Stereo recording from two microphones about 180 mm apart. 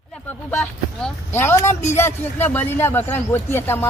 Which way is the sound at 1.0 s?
15° left (ahead or behind).